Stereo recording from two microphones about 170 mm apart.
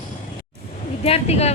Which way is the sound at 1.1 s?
40° left (ahead or behind).